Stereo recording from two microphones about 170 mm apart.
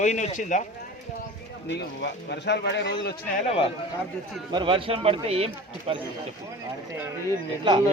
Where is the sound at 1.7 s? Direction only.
90° left.